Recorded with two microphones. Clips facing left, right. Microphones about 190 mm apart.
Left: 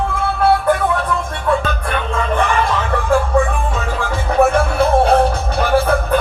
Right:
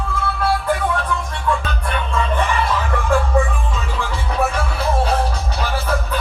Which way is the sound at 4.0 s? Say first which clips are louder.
Left 7 dB; 50° left (ahead or behind).